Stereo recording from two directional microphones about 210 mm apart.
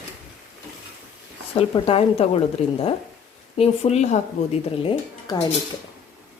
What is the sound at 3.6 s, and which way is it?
Speech, 30° left (ahead or behind).